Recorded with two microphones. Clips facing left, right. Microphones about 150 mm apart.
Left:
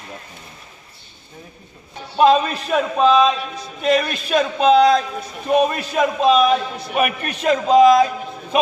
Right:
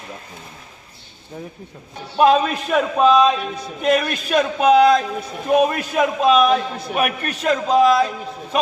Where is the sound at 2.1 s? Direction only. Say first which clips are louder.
Even; 5° right (ahead or behind).